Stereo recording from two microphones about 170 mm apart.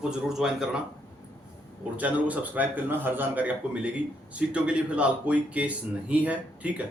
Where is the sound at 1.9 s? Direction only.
10° right (ahead or behind).